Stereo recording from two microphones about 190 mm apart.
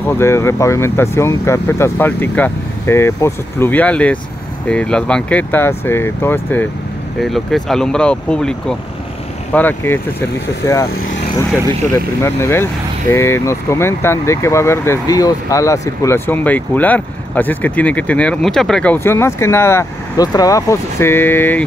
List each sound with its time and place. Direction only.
0.1 s speech: 15° left (ahead or behind)
12.2 s speech: 15° left (ahead or behind)